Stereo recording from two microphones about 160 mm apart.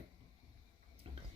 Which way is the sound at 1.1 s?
35° right (ahead or behind).